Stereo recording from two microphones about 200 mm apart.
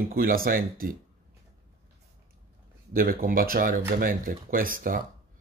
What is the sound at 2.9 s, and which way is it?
Speech, 45° right (ahead or behind).